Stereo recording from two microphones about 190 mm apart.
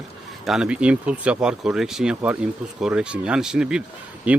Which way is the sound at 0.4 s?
5° right (ahead or behind).